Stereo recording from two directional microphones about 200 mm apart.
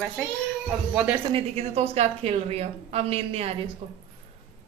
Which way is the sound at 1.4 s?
30° right (ahead or behind).